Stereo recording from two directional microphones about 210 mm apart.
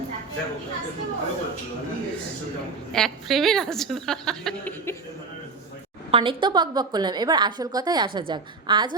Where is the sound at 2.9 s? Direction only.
Centre (ahead or behind).